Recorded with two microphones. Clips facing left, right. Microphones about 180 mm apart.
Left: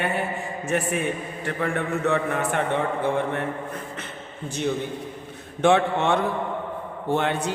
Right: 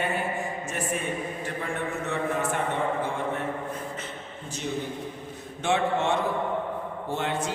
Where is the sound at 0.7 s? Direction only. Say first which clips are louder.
Left 10 dB; 65° left (ahead or behind).